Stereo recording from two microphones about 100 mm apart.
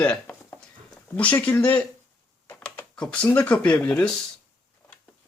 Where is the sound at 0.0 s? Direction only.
15° left (ahead or behind).